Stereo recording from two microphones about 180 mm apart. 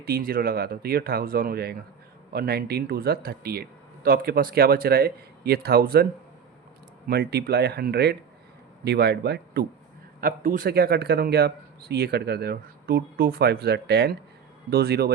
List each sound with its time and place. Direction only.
0.0 s speech: 55° right (ahead or behind)
7.1 s speech: 65° right (ahead or behind)
10.2 s speech: 50° right (ahead or behind)